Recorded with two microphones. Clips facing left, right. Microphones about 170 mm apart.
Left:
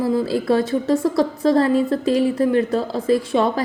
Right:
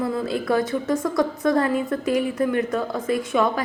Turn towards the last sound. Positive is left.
turn(degrees=30)  # may be behind; listen again after turning